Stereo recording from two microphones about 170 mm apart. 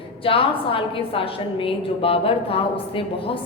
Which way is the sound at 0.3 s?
30° left (ahead or behind).